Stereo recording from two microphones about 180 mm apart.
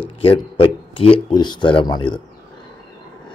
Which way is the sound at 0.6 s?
30° left (ahead or behind).